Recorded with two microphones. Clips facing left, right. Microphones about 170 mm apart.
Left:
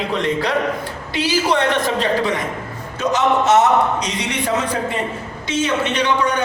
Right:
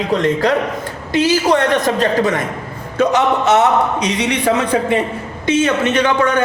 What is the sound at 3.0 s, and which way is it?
Speech, 60° right (ahead or behind).